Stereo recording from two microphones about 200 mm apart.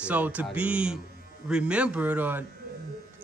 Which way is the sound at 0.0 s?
5° right (ahead or behind).